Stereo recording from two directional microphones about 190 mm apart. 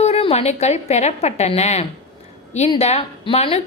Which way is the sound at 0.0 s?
30° left (ahead or behind).